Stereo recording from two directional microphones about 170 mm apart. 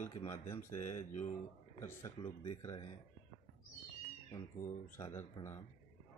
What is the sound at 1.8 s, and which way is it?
Speech, 20° left (ahead or behind).